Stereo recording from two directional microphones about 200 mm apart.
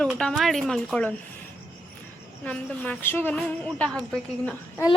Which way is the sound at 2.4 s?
5° left (ahead or behind).